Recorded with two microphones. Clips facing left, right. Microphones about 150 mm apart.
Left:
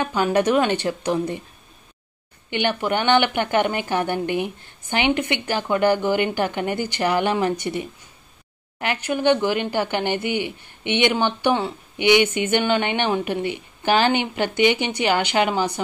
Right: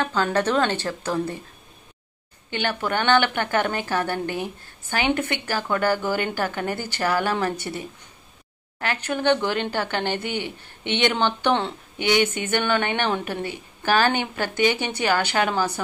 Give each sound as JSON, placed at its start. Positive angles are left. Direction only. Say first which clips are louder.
{"t": 0.0, "sound": "speech", "louder": "left 3 dB", "side_deg": 15}
{"t": 2.5, "sound": "speech", "louder": "left 3 dB", "side_deg": 15}